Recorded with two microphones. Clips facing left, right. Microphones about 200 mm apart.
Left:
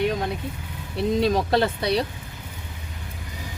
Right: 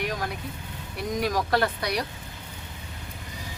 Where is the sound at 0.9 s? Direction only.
25° left (ahead or behind).